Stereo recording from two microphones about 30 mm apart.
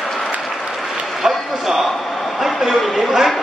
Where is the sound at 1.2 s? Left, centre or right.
Centre.